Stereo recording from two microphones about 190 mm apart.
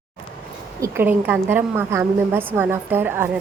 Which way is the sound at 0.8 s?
10° right (ahead or behind).